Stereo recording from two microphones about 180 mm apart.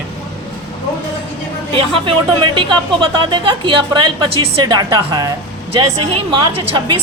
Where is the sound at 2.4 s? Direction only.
25° right (ahead or behind).